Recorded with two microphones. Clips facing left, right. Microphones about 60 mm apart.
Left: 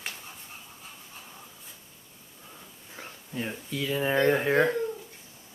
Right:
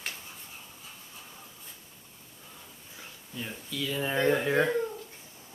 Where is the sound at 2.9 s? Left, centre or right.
Left.